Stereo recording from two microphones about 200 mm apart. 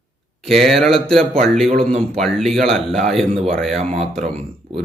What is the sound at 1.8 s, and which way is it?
Speech, 30° right (ahead or behind).